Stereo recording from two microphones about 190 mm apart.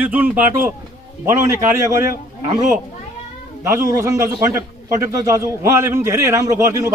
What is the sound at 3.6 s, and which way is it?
A man's voice, 15° right (ahead or behind).